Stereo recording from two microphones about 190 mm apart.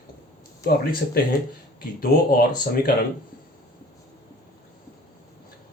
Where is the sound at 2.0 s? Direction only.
50° left (ahead or behind).